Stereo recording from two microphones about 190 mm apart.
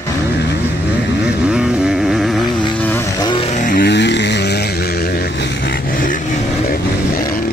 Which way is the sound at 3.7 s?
65° left (ahead or behind).